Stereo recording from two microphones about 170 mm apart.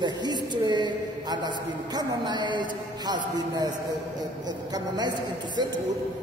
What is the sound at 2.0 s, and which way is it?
Speech, 25° right (ahead or behind).